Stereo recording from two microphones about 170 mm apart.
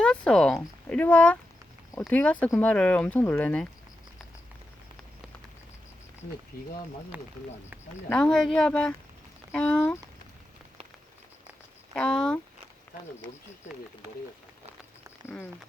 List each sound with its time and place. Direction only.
0.0 s speech: 5° left (ahead or behind)
6.5 s speech: 60° left (ahead or behind)
7.1 s speech: 10° right (ahead or behind)
8.1 s speech: 5° left (ahead or behind)
11.9 s speech: 5° left (ahead or behind)